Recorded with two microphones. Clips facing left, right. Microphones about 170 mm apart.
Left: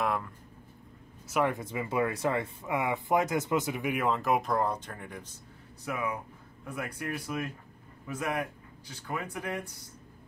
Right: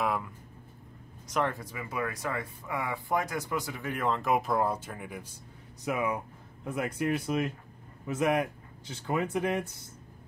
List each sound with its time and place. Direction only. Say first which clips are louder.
0.0 s speech: even; centre (ahead or behind)
1.5 s speech: left 5 dB; 25° left (ahead or behind); by 5.4 s 10° right (ahead or behind)
5.9 s speech: right 3 dB; 20° right (ahead or behind)